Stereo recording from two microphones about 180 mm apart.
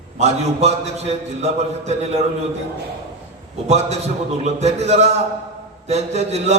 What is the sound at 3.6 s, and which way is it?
A man's voice, 40° right (ahead or behind).